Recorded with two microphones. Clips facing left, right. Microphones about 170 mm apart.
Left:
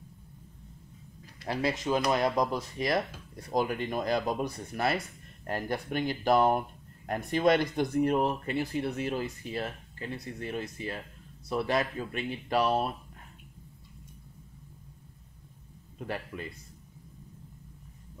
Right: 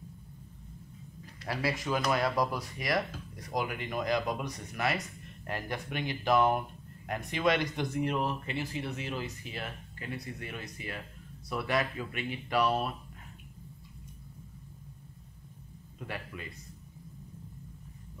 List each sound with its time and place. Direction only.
1.4 s speech: 25° left (ahead or behind); by 9.2 s 45° left (ahead or behind)
9.2 s speech: 35° left (ahead or behind)